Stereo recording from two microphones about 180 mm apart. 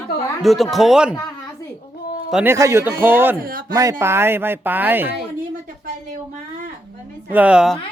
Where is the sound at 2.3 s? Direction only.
10° right (ahead or behind).